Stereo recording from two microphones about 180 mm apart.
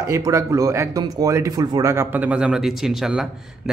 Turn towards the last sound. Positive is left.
turn(degrees=0)  # may be behind; listen again after turning